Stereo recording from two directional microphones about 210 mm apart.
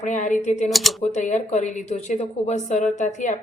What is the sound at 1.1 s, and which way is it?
Speech, 35° left (ahead or behind).